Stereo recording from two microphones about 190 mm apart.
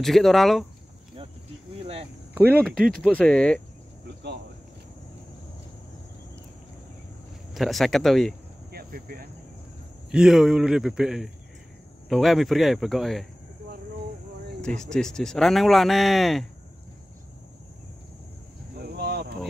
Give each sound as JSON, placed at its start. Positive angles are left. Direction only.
{"t": 0.0, "sound": "speech", "side_deg": 0}
{"t": 2.3, "sound": "speech", "side_deg": -10}
{"t": 2.6, "sound": "speech", "side_deg": 5}
{"t": 7.5, "sound": "speech", "side_deg": 0}
{"t": 8.7, "sound": "a sound", "side_deg": -50}
{"t": 10.1, "sound": "speech", "side_deg": 0}
{"t": 14.8, "sound": "speech", "side_deg": 5}
{"t": 18.8, "sound": "a sound", "side_deg": -55}